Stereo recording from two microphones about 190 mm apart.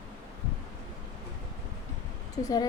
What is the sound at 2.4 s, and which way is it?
Speech, 20° left (ahead or behind).